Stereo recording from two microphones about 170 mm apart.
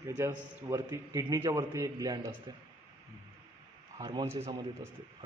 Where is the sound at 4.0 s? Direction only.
30° right (ahead or behind).